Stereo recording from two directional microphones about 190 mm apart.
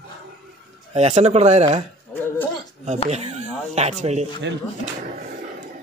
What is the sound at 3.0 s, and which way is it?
Speech, 35° right (ahead or behind).